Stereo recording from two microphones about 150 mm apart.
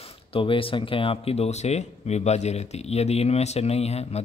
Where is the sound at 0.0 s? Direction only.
35° left (ahead or behind).